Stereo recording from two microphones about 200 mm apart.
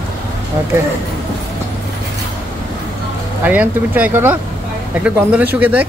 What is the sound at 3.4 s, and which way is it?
Speech, 10° right (ahead or behind).